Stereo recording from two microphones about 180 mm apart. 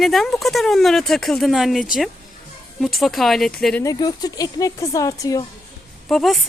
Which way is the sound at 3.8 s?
20° left (ahead or behind).